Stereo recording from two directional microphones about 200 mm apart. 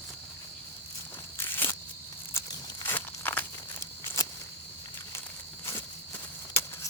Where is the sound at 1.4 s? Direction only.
10° left (ahead or behind).